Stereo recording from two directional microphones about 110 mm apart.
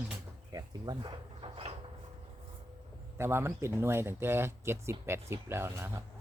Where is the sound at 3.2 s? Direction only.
20° right (ahead or behind).